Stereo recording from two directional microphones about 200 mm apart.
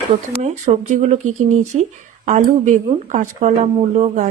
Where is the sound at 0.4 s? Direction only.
35° right (ahead or behind).